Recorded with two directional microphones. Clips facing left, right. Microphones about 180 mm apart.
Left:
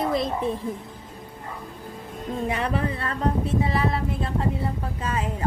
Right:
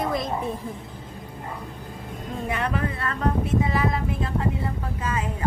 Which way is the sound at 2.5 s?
30° left (ahead or behind).